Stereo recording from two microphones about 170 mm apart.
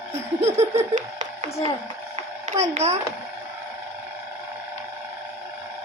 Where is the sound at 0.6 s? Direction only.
45° right (ahead or behind).